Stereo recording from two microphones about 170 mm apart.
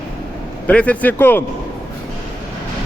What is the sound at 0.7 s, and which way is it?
Speech, 10° left (ahead or behind).